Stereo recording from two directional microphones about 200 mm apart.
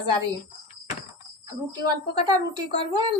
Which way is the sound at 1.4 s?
20° right (ahead or behind).